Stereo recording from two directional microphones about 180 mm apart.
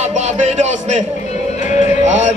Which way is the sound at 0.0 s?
40° right (ahead or behind).